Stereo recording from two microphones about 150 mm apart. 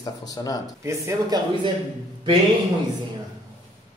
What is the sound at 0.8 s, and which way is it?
Speech, 20° right (ahead or behind).